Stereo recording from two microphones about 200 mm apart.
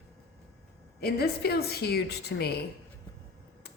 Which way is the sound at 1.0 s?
55° left (ahead or behind).